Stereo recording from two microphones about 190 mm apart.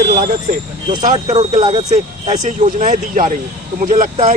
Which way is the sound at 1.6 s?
20° right (ahead or behind).